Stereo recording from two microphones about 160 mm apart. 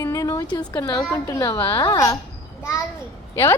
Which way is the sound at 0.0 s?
20° left (ahead or behind).